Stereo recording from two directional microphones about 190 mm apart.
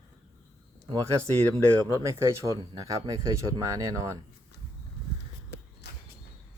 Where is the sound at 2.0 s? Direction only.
15° right (ahead or behind).